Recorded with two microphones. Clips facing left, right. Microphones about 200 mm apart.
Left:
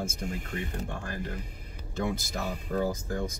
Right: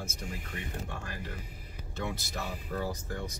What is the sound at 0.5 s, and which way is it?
Speech, 45° left (ahead or behind).